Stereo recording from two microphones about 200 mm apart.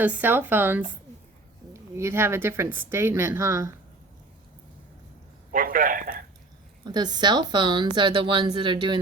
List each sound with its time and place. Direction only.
0.0 s speech: 10° right (ahead or behind)
5.5 s a man's voice: 45° right (ahead or behind)
6.8 s a woman's voice: 20° right (ahead or behind)